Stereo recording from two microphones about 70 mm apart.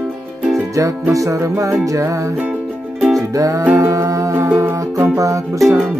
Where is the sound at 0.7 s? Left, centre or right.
Right.